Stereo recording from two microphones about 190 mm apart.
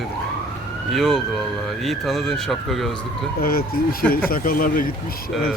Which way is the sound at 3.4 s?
50° left (ahead or behind).